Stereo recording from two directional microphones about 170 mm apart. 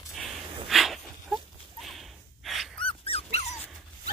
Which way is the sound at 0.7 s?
Centre (ahead or behind).